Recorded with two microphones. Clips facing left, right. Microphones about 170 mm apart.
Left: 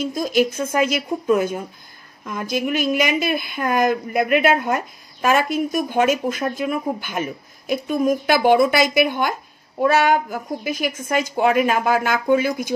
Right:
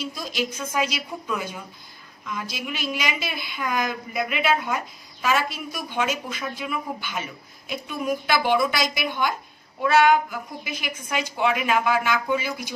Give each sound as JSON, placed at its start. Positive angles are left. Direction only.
{"t": 0.0, "sound": "a woman's voice", "side_deg": 50}